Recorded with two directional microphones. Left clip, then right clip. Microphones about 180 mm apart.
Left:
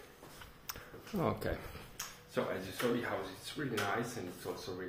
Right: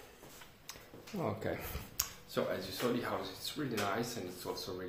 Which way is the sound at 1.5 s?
10° right (ahead or behind).